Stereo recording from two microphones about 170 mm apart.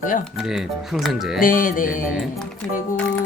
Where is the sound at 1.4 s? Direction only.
55° left (ahead or behind).